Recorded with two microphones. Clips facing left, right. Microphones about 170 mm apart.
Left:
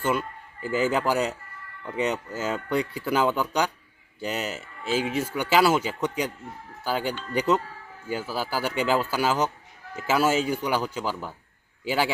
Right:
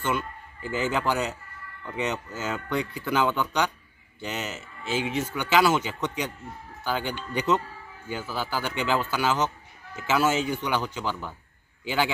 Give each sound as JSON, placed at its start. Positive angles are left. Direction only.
{"t": 0.0, "sound": "speech", "side_deg": 35}
{"t": 2.4, "sound": "speech", "side_deg": 35}
{"t": 6.8, "sound": "speech", "side_deg": 35}